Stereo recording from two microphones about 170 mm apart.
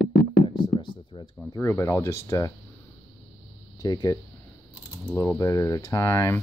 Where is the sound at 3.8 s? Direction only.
25° left (ahead or behind).